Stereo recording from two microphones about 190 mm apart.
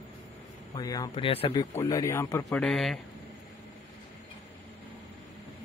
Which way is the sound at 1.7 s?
15° left (ahead or behind).